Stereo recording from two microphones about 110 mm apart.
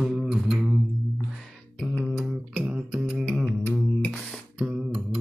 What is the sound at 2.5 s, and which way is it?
Beatboxing, 10° right (ahead or behind).